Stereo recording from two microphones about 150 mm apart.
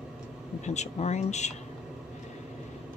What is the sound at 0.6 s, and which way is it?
Speech, 50° left (ahead or behind).